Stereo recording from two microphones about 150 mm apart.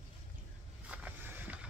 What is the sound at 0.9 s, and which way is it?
Vehicle, 10° right (ahead or behind).